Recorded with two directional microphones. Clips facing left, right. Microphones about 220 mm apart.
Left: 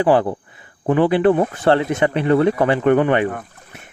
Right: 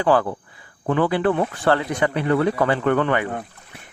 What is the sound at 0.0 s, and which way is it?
Speech, 25° left (ahead or behind).